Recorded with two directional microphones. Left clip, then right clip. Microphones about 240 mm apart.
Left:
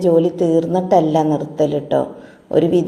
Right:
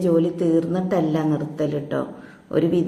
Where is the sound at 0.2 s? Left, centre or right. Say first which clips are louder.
Left 5 dB; centre.